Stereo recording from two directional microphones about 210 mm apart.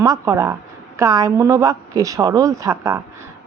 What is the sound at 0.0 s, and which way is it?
A woman's voice, 15° right (ahead or behind).